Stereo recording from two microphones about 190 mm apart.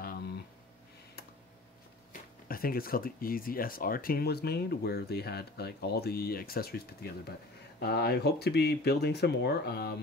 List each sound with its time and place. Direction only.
2.4 s speech: 50° left (ahead or behind)